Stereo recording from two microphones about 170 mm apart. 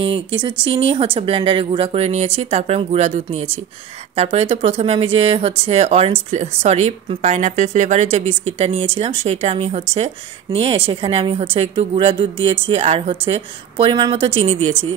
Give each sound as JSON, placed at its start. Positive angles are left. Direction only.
{"t": 0.4, "sound": "speech", "side_deg": -30}